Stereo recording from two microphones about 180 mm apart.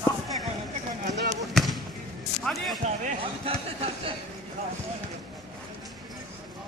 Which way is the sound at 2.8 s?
35° right (ahead or behind).